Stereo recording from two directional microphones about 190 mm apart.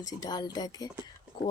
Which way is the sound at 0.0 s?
20° left (ahead or behind).